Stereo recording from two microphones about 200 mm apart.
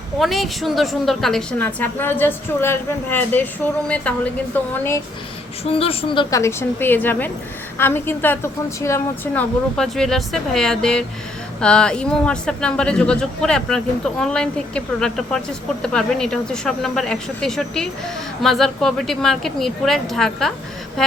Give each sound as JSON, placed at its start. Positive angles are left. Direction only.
{"t": 0.2, "sound": "a woman's voice", "side_deg": 0}
{"t": 5.6, "sound": "a woman's voice", "side_deg": 30}
{"t": 6.4, "sound": "a woman's voice", "side_deg": 10}